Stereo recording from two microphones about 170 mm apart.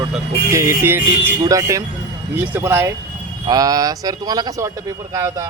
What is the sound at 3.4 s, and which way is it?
Speech, 20° right (ahead or behind).